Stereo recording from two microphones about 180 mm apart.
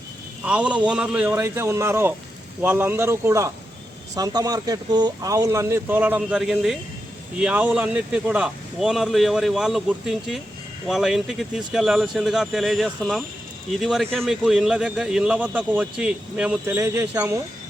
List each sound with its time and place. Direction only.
0.4 s a man's voice: 5° right (ahead or behind)